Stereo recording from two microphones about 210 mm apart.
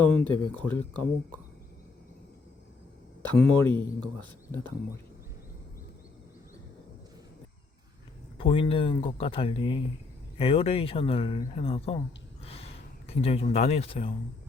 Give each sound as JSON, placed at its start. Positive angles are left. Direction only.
{"t": 0.2, "sound": "speech", "side_deg": 5}
{"t": 3.3, "sound": "speech", "side_deg": 5}
{"t": 8.4, "sound": "speech", "side_deg": 25}
{"t": 12.5, "sound": "a sound", "side_deg": 30}